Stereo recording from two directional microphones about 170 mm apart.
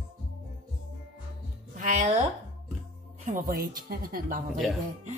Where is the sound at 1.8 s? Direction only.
45° right (ahead or behind).